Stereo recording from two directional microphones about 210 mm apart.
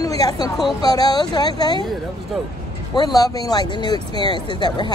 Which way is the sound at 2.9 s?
20° left (ahead or behind).